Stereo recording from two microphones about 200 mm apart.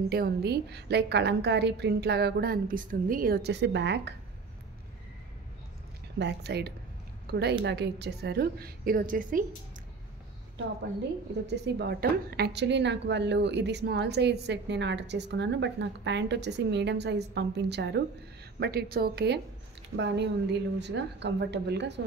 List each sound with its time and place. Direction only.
0.1 s a woman's voice: 50° right (ahead or behind)
6.1 s a woman's voice: 60° right (ahead or behind); by 9.4 s 40° right (ahead or behind)
11.6 s a woman's voice: 55° right (ahead or behind)